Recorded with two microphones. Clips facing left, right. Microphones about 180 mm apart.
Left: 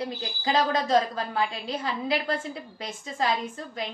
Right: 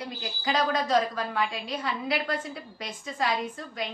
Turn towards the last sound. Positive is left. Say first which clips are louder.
# even
turn(degrees=25)  # may be behind; listen again after turning